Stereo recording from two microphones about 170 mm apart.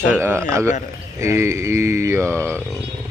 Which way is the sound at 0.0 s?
15° right (ahead or behind).